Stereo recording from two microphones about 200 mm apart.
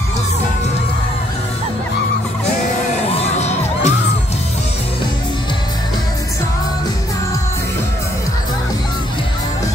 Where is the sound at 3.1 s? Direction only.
30° left (ahead or behind).